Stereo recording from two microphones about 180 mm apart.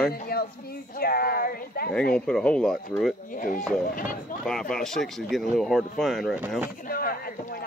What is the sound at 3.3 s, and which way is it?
Speech, 50° left (ahead or behind).